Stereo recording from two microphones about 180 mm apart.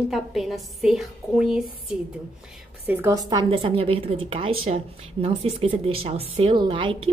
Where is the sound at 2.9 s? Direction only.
15° right (ahead or behind).